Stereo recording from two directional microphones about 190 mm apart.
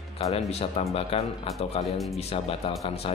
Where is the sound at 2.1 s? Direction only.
30° left (ahead or behind).